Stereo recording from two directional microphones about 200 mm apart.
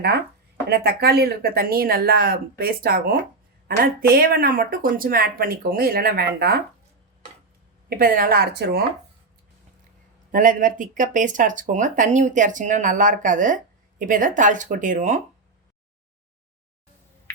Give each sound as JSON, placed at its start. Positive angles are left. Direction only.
{"t": 0.7, "sound": "speech", "side_deg": -50}
{"t": 7.9, "sound": "speech", "side_deg": -45}
{"t": 10.3, "sound": "speech", "side_deg": -40}